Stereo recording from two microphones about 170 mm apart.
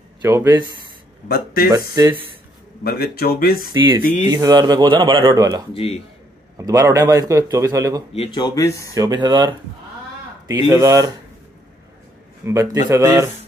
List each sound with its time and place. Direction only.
0.2 s a man's voice: 15° right (ahead or behind)
1.3 s speech: 60° left (ahead or behind)
2.8 s speech: 65° left (ahead or behind)
3.7 s a man's voice: 25° right (ahead or behind)
4.0 s speech: 45° left (ahead or behind)
4.3 s a man's voice: 20° right (ahead or behind)
5.8 s speech: 35° left (ahead or behind)
6.6 s a man's voice: 20° right (ahead or behind)
8.1 s speech: 30° left (ahead or behind)
8.9 s a man's voice: 20° right (ahead or behind)
10.7 s a man's voice: 20° right (ahead or behind)
12.4 s a man's voice: 20° right (ahead or behind)